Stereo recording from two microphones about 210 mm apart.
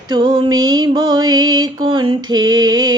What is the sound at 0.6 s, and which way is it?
Mantra, 20° right (ahead or behind).